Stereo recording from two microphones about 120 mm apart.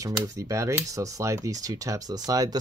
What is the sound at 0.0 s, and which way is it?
Speech, 25° right (ahead or behind).